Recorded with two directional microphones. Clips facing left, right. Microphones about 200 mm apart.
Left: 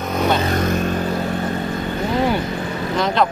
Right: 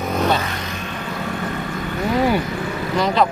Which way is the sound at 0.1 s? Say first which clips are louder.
Left 1 dB; centre (ahead or behind).